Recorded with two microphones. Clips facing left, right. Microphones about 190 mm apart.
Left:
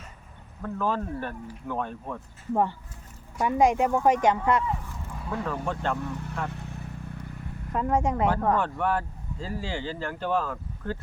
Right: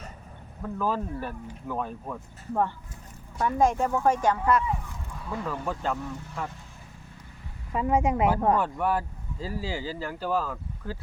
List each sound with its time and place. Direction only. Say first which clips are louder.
0.6 s speech: even; 5° right (ahead or behind)
2.5 s speech: left 2 dB; 15° left (ahead or behind)
5.5 s speech: even; 5° right (ahead or behind)
6.5 s vehicle: left 9 dB; 65° left (ahead or behind)
7.7 s speech: right 1 dB; 5° right (ahead or behind)